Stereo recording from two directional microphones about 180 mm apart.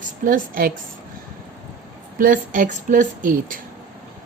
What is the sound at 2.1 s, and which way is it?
Speech, 50° right (ahead or behind).